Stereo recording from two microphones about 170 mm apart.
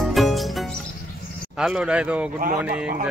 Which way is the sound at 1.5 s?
5° right (ahead or behind).